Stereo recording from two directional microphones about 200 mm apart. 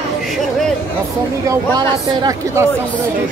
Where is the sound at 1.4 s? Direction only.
20° right (ahead or behind).